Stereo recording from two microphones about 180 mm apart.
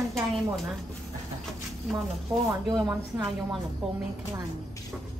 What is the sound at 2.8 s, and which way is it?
Speech, 20° right (ahead or behind).